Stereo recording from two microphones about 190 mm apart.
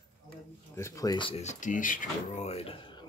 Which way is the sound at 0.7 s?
15° left (ahead or behind).